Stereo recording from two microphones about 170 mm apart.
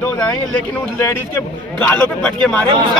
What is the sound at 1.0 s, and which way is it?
A man's voice, 15° left (ahead or behind).